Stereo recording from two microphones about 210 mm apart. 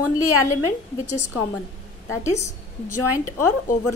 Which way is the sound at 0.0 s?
90° left.